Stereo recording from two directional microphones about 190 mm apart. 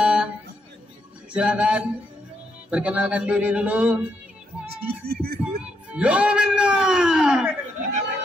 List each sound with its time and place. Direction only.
0.0 s music: 5° right (ahead or behind)
1.3 s speech: 5° right (ahead or behind)
4.8 s music: 55° right (ahead or behind)
5.9 s speech: 5° right (ahead or behind)